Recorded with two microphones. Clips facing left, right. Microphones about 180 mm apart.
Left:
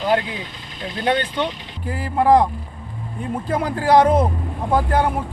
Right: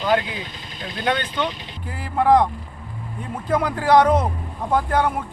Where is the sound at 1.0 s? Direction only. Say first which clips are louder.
Left 2 dB; 30° left (ahead or behind).